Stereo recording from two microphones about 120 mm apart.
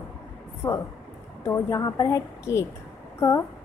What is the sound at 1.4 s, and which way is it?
A woman's voice, 20° left (ahead or behind).